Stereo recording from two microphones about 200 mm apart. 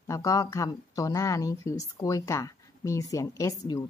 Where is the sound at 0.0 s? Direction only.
15° left (ahead or behind).